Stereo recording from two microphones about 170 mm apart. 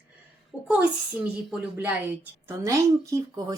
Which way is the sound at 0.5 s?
5° right (ahead or behind).